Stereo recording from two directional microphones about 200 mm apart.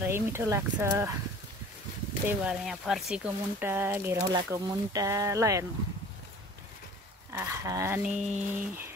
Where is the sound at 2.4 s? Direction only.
Centre (ahead or behind).